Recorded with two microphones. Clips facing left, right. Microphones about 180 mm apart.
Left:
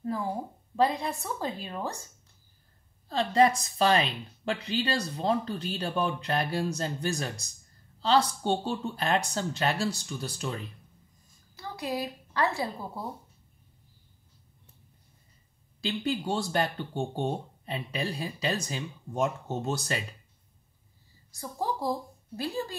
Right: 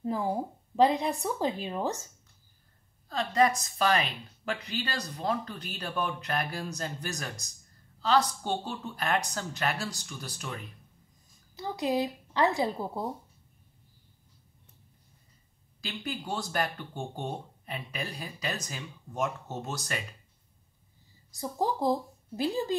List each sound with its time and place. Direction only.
0.0 s speech: 15° right (ahead or behind)
3.1 s speech: 30° left (ahead or behind)
11.5 s a woman's voice: 20° right (ahead or behind)
15.8 s speech: 25° left (ahead or behind)
21.3 s a woman's voice: 20° right (ahead or behind)